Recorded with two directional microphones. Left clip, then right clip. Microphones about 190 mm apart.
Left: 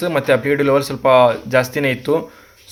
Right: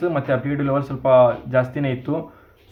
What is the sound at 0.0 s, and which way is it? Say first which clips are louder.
Speech: left 5 dB; 40° left (ahead or behind).